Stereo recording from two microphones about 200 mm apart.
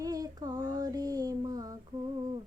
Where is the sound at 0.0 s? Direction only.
20° right (ahead or behind).